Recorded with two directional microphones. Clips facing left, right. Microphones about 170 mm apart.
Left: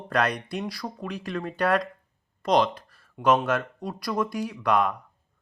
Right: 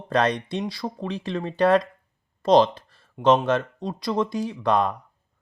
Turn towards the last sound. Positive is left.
turn(degrees=-25)  # may be behind; listen again after turning